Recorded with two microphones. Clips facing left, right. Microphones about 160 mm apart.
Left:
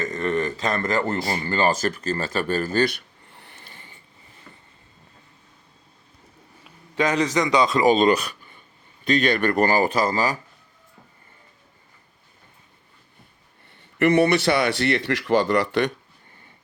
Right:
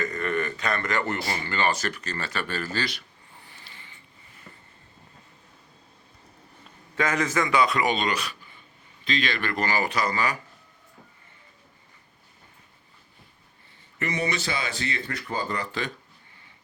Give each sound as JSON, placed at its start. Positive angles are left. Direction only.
{"t": 0.0, "sound": "speech", "side_deg": 25}
{"t": 3.4, "sound": "a sound", "side_deg": 50}
{"t": 6.7, "sound": "a sound", "side_deg": 15}
{"t": 7.3, "sound": "speech", "side_deg": 20}
{"t": 7.8, "sound": "speech", "side_deg": 35}
{"t": 9.4, "sound": "speech", "side_deg": 45}
{"t": 14.0, "sound": "speech", "side_deg": 65}